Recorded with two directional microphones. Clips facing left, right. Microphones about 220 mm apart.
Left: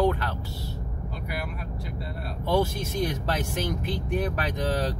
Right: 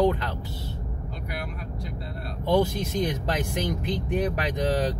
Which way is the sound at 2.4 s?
15° right (ahead or behind).